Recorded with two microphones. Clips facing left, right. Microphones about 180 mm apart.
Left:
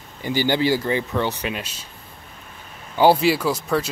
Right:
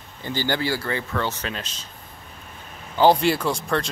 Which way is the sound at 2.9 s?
10° left (ahead or behind).